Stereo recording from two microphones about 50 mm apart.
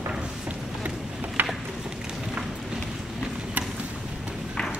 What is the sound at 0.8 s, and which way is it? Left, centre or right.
Vehicle, right.